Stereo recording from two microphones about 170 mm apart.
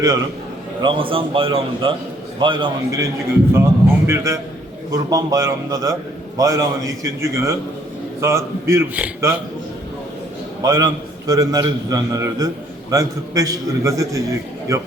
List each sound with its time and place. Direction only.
0.8 s a man's voice: 30° right (ahead or behind)
3.5 s a man's voice: 15° right (ahead or behind)
10.6 s a man's voice: 20° right (ahead or behind)